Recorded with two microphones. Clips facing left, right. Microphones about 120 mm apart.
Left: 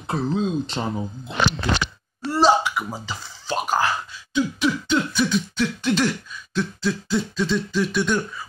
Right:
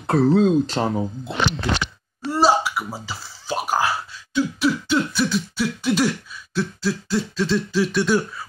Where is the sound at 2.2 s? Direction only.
10° right (ahead or behind).